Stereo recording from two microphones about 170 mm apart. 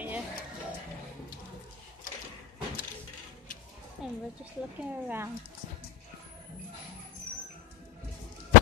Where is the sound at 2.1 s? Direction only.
55° left (ahead or behind).